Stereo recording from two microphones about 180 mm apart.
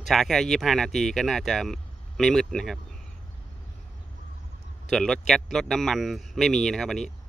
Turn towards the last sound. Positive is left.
turn(degrees=5)  # may be behind; listen again after turning